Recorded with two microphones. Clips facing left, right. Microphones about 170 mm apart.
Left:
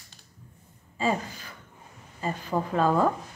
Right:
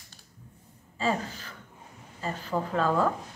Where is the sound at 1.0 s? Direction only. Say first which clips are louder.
Left 1 dB; 15° left (ahead or behind).